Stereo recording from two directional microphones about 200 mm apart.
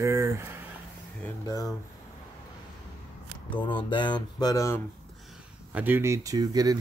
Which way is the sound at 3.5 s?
25° left (ahead or behind).